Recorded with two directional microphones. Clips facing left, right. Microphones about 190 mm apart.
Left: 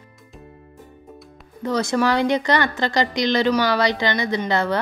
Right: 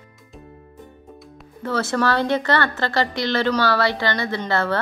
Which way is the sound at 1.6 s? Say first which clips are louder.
Left 2 dB; 15° left (ahead or behind).